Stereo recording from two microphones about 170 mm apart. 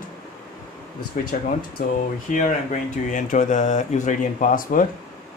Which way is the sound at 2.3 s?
45° left (ahead or behind).